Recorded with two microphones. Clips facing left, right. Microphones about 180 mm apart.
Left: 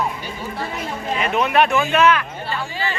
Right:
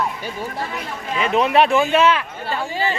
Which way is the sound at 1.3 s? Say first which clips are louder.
Right 2 dB; 30° right (ahead or behind).